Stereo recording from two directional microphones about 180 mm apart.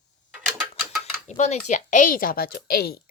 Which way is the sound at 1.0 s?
40° left (ahead or behind).